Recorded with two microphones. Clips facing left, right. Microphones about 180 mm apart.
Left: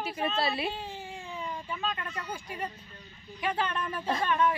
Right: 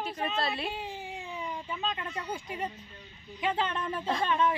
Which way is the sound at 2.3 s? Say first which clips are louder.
Right 2 dB; 20° right (ahead or behind).